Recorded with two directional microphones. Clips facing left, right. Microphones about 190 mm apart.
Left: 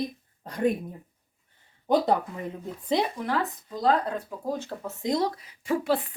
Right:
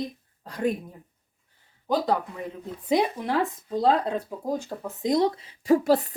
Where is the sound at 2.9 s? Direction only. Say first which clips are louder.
Right 3 dB; 15° right (ahead or behind).